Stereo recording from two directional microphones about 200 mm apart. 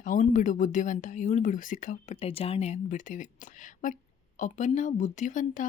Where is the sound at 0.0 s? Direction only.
40° left (ahead or behind).